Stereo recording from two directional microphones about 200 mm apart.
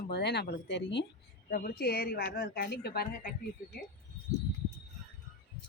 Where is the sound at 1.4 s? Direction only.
45° left (ahead or behind).